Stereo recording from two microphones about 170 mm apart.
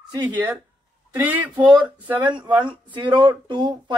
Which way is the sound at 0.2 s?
10° right (ahead or behind).